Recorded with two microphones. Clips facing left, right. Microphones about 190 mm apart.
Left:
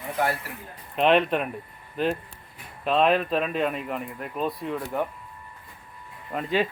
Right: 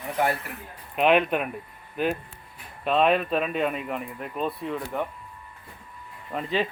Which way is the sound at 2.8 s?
Centre (ahead or behind).